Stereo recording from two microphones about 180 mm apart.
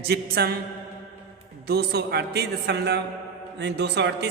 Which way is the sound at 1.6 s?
60° right (ahead or behind).